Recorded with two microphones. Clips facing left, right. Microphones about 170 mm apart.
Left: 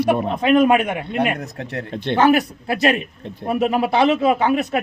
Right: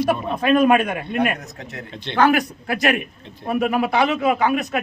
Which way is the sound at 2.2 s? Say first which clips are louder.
Left 1 dB; 25° left (ahead or behind).